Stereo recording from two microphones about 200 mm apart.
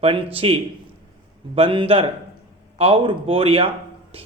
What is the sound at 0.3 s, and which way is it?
Speech, 30° right (ahead or behind).